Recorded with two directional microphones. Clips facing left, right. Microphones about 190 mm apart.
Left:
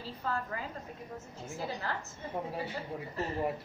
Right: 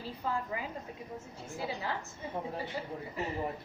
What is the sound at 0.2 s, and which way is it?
A woman's voice, 15° right (ahead or behind).